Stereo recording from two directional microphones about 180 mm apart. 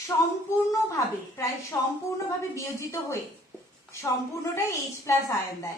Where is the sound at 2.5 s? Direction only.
15° left (ahead or behind).